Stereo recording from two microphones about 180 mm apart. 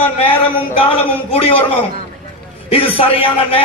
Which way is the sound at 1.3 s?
30° left (ahead or behind).